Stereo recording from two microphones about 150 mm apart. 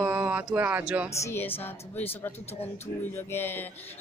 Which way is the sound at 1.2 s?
15° left (ahead or behind).